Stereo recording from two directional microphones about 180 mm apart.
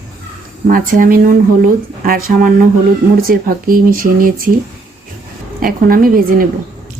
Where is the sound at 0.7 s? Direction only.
50° right (ahead or behind).